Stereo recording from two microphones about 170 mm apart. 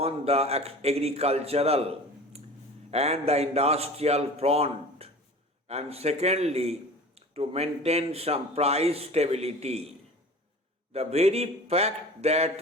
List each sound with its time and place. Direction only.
0.0 s speech: 35° right (ahead or behind)
2.9 s speech: 40° right (ahead or behind)
10.9 s speech: 40° right (ahead or behind)